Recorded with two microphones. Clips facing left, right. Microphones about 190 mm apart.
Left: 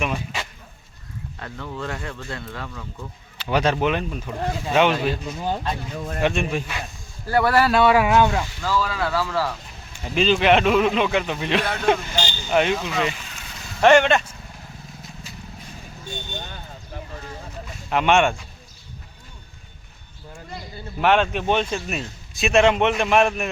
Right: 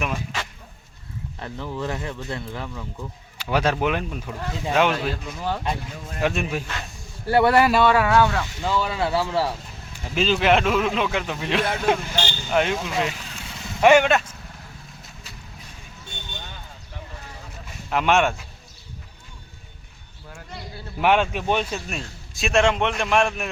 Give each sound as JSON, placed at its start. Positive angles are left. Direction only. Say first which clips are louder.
{"t": 1.4, "sound": "speech", "louder": "right 2 dB", "side_deg": -25}
{"t": 3.3, "sound": "a man's voice", "louder": "left 1 dB", "side_deg": -5}
{"t": 5.4, "sound": "speech", "louder": "right 1 dB", "side_deg": 25}
{"t": 6.2, "sound": "a man's voice", "louder": "left 1 dB", "side_deg": 0}
{"t": 7.3, "sound": "speech", "louder": "right 2 dB", "side_deg": -25}
{"t": 7.7, "sound": "speech", "louder": "left 1 dB", "side_deg": 5}
{"t": 8.6, "sound": "speech", "louder": "right 1 dB", "side_deg": -25}
{"t": 10.2, "sound": "a man's voice", "louder": "left 2 dB", "side_deg": 0}
{"t": 17.8, "sound": "a man's voice", "louder": "left 2 dB", "side_deg": 0}
{"t": 21.0, "sound": "a man's voice", "louder": "left 1 dB", "side_deg": -10}